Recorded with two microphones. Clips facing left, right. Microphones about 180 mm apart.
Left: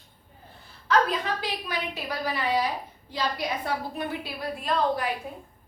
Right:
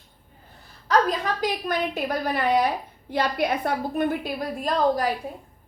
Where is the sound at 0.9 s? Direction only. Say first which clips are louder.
Right 2 dB; 40° right (ahead or behind).